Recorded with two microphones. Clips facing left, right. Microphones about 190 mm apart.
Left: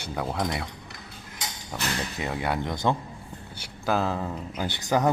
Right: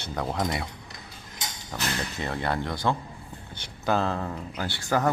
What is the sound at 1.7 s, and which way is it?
Speech, 10° left (ahead or behind).